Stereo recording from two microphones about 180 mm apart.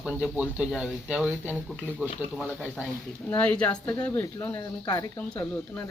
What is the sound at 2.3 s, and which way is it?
Speech, 5° left (ahead or behind).